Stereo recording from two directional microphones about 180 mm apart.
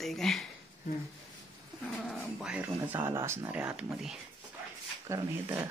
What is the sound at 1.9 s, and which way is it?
Speech, centre (ahead or behind).